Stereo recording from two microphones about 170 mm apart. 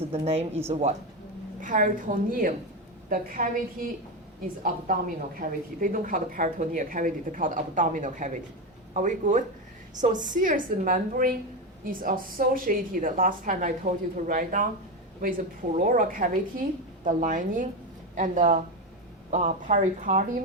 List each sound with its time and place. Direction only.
0.1 s a woman's voice: 40° right (ahead or behind)
15.8 s a woman's voice: 55° right (ahead or behind)